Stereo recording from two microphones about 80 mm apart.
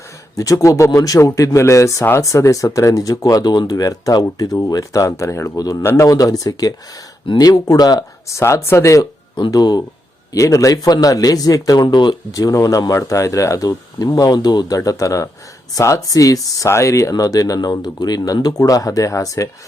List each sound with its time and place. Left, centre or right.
0.3 s speech: left
3.5 s speech: left
5.8 s speech: left
6.1 s speech: left
8.3 s speech: left
9.0 s speech: left
9.5 s speech: left
10.3 s speech: left
11.9 s speech: left
12.3 s speech: left
14.8 s speech: left